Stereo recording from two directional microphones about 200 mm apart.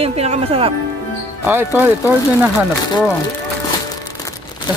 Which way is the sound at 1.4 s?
10° right (ahead or behind).